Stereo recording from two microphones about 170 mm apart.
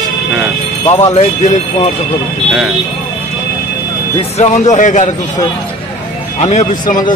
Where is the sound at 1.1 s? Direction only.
40° left (ahead or behind).